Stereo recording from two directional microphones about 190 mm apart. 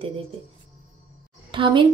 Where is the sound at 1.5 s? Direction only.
25° right (ahead or behind).